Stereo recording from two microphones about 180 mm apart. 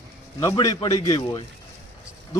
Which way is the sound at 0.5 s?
25° left (ahead or behind).